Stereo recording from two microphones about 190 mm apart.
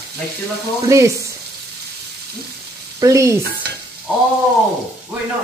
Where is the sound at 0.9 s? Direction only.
15° right (ahead or behind).